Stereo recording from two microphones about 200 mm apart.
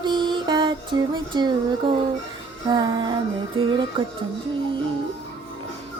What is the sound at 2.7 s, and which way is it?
Child singing, 20° right (ahead or behind).